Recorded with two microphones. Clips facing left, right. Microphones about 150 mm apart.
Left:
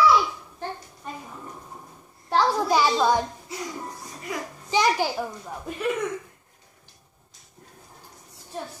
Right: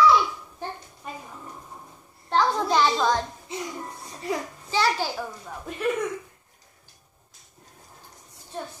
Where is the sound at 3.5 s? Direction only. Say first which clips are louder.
Right 3 dB; 25° right (ahead or behind).